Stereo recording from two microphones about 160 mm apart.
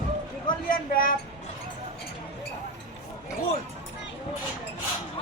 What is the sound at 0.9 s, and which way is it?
Speech, 65° left (ahead or behind).